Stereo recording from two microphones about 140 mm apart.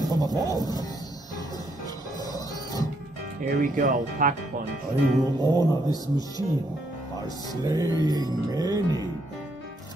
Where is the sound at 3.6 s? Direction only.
70° right (ahead or behind).